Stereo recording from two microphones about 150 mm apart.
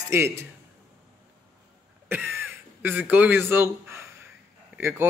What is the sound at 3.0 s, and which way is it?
A man's voice, 10° right (ahead or behind).